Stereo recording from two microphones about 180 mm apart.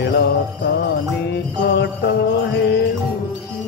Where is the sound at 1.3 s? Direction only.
75° left (ahead or behind).